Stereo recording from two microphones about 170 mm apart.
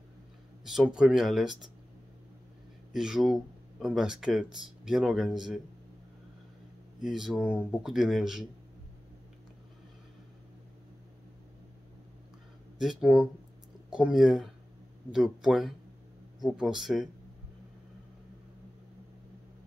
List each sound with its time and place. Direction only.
0.7 s speech: 5° right (ahead or behind)
2.9 s speech: 5° right (ahead or behind)
7.0 s speech: centre (ahead or behind)
12.7 s speech: 5° right (ahead or behind)